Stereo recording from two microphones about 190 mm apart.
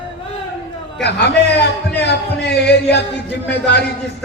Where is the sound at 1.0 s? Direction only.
60° left (ahead or behind).